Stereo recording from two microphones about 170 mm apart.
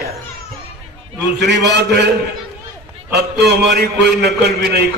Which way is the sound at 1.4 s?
90° right.